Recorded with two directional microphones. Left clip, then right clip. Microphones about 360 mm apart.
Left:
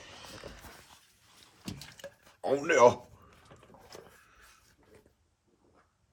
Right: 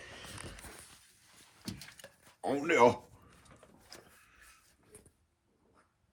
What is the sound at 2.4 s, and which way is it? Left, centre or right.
Speech, centre.